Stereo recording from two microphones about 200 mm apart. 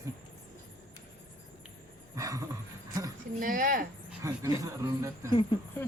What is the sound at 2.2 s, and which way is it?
Speech, 15° right (ahead or behind).